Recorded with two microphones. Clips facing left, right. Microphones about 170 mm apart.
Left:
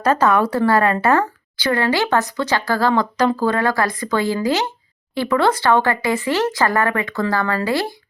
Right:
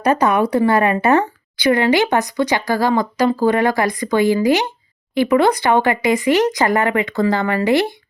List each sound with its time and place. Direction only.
0.0 s a woman's voice: 15° right (ahead or behind)